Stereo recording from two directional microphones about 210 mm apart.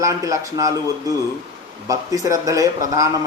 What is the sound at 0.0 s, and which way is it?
A man's voice, 15° right (ahead or behind).